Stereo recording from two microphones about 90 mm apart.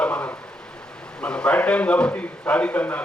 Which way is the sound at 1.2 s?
10° left (ahead or behind).